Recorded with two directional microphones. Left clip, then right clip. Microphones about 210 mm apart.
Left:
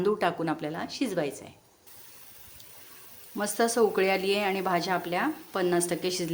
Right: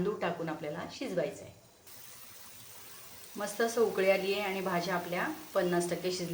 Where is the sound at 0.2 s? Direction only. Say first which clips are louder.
Left 7 dB; 50° left (ahead or behind).